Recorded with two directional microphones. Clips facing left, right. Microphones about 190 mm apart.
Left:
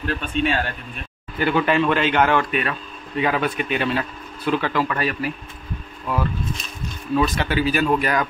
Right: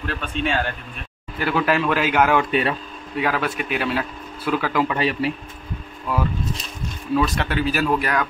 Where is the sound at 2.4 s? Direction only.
30° right (ahead or behind).